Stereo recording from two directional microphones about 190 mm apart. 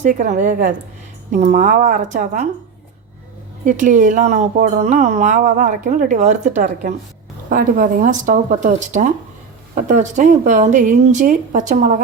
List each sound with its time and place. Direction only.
0.0 s speech: 45° right (ahead or behind)
3.6 s speech: 40° right (ahead or behind)